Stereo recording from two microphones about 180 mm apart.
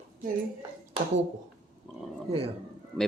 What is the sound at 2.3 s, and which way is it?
Speech, 35° right (ahead or behind).